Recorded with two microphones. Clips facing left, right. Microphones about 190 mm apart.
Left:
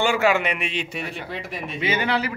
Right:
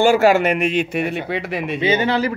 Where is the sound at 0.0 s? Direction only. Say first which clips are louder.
Right 7 dB; 40° right (ahead or behind); by 1.8 s 65° right (ahead or behind).